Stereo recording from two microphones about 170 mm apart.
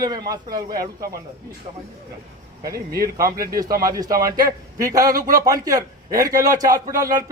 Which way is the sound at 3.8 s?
20° right (ahead or behind).